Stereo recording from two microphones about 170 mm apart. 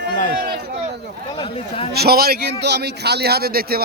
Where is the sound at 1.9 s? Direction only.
70° right (ahead or behind).